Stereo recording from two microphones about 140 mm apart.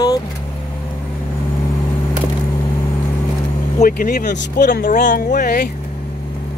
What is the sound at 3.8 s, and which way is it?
Speech, 90° left.